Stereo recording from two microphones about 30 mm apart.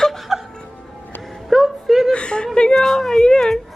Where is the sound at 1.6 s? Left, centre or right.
Centre.